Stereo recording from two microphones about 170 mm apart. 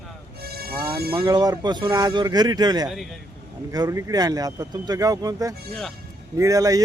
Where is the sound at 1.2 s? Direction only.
25° right (ahead or behind).